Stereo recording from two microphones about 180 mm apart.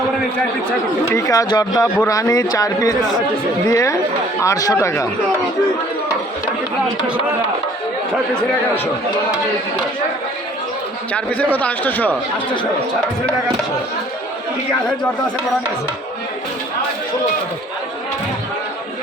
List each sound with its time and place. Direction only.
1.1 s a man's voice: 20° left (ahead or behind)
11.1 s a man's voice: 10° left (ahead or behind)